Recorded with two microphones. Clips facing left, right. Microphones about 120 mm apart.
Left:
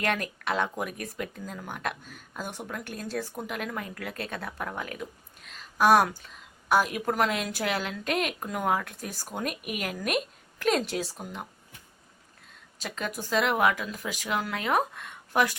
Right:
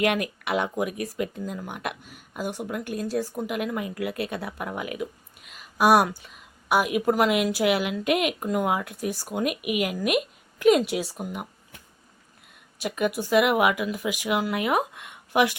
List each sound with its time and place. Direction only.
0.0 s speech: 10° right (ahead or behind)
12.8 s speech: 10° right (ahead or behind)